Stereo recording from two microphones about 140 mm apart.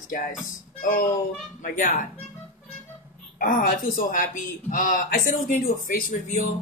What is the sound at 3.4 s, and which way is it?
A man's voice, 85° left.